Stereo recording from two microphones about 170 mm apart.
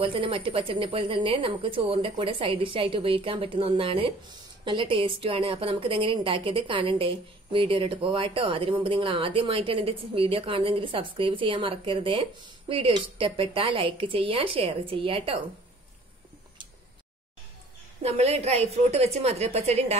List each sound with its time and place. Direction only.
0.0 s a woman's voice: 30° right (ahead or behind)
18.0 s a woman's voice: 40° right (ahead or behind)